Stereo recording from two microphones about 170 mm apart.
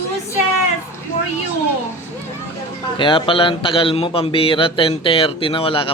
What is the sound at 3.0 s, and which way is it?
A man's voice, 30° left (ahead or behind).